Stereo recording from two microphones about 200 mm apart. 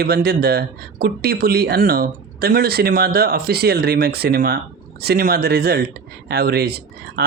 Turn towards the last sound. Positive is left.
turn(degrees=-55)  # may be behind; listen again after turning